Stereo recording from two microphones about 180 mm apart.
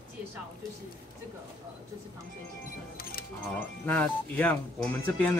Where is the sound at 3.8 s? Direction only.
10° left (ahead or behind).